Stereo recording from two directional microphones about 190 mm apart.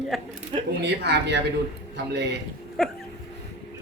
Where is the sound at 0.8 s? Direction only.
65° right (ahead or behind).